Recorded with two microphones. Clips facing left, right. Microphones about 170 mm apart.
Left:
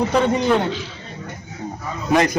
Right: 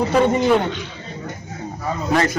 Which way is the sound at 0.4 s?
5° right (ahead or behind).